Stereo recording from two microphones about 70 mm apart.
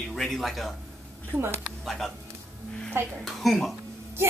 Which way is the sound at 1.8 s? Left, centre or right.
Centre.